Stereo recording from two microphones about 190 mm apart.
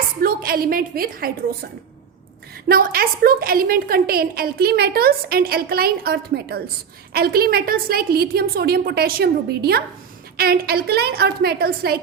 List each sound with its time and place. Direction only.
0.2 s a woman's voice: 50° right (ahead or behind)
2.6 s a woman's voice: 50° right (ahead or behind)